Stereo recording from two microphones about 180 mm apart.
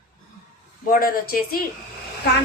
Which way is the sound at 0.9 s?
55° left (ahead or behind).